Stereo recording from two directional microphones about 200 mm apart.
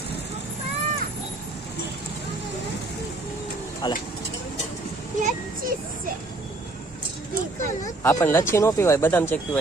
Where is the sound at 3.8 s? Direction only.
20° left (ahead or behind).